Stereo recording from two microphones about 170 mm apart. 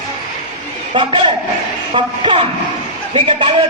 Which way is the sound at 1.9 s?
30° right (ahead or behind).